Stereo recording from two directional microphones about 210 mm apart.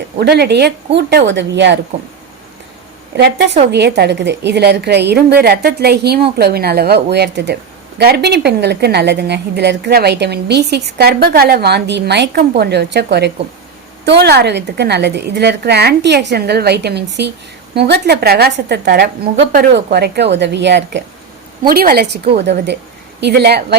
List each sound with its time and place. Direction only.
0.2 s a woman's voice: 50° right (ahead or behind)
3.7 s a woman's voice: 55° right (ahead or behind)
21.7 s a woman's voice: 45° right (ahead or behind)